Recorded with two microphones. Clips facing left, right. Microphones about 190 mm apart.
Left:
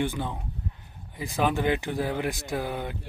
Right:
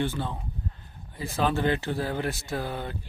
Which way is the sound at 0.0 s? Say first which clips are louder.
Even; 15° left (ahead or behind).